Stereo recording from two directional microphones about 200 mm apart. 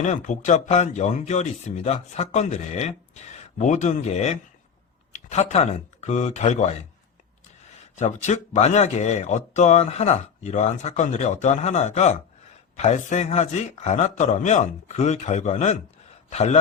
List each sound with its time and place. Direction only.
0.0 s speech: 40° left (ahead or behind)
7.9 s speech: 35° left (ahead or behind)